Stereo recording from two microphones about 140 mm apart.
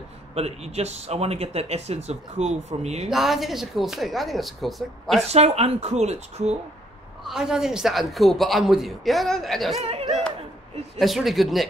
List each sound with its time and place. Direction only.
0.3 s speech: 50° right (ahead or behind)
3.1 s a man's voice: centre (ahead or behind)
5.3 s speech: 50° right (ahead or behind)
7.2 s a man's voice: 5° right (ahead or behind)
9.8 s a sound: 45° right (ahead or behind)
11.0 s a man's voice: centre (ahead or behind)